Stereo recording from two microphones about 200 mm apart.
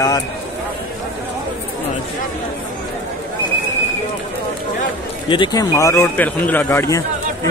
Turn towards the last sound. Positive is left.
turn(degrees=15)  # may be behind; listen again after turning